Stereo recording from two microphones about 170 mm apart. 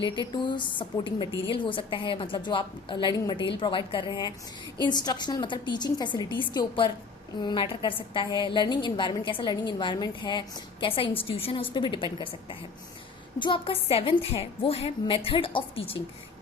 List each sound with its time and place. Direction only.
0.4 s a woman's voice: 25° left (ahead or behind)